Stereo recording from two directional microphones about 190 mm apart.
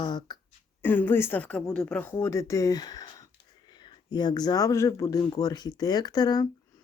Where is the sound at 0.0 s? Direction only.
20° left (ahead or behind).